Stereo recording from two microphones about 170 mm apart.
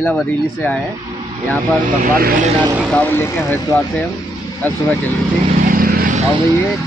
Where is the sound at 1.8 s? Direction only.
50° right (ahead or behind).